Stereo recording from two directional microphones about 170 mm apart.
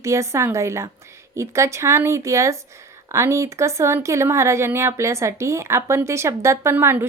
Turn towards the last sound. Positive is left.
turn(degrees=-15)  # may be behind; listen again after turning